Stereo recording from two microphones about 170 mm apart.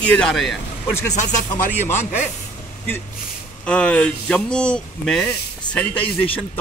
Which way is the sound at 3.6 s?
5° left (ahead or behind).